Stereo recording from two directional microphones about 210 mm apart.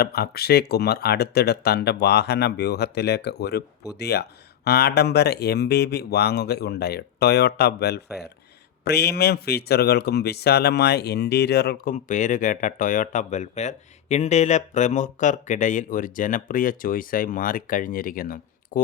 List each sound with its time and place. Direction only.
0.0 s speech: 50° left (ahead or behind)